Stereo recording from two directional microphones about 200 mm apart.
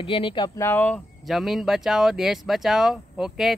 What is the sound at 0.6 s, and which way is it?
Speech, 10° left (ahead or behind).